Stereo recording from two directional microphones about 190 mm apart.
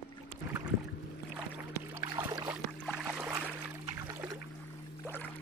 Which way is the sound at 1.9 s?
15° right (ahead or behind).